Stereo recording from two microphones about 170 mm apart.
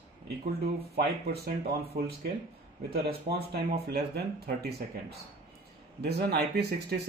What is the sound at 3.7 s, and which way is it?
Speech, 70° right (ahead or behind).